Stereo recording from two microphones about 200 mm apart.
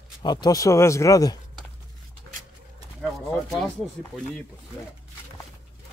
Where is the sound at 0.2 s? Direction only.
20° left (ahead or behind).